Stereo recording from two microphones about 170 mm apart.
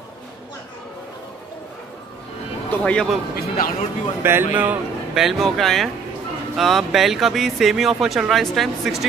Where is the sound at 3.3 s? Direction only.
60° left (ahead or behind).